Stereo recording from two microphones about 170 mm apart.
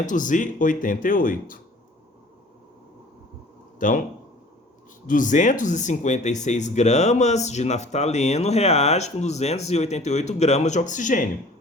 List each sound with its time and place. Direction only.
0.0 s speech: 50° left (ahead or behind)
3.8 s speech: 50° left (ahead or behind)
5.0 s speech: 50° left (ahead or behind)